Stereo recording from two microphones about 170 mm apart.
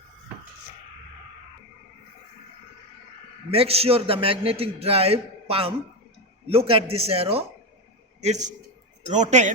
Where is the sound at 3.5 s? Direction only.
35° right (ahead or behind).